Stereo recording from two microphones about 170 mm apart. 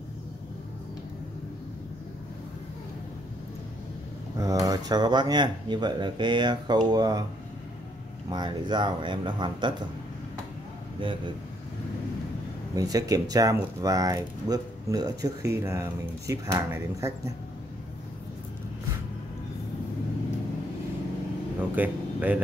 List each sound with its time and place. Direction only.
4.4 s speech: 20° right (ahead or behind)
8.3 s speech: 25° right (ahead or behind)
12.7 s speech: 20° right (ahead or behind)
21.7 s speech: 10° right (ahead or behind)